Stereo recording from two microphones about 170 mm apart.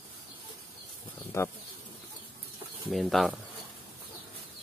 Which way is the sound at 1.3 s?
15° left (ahead or behind).